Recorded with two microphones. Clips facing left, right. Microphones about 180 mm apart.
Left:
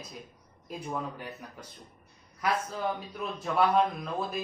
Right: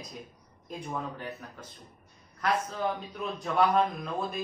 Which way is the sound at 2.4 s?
10° left (ahead or behind).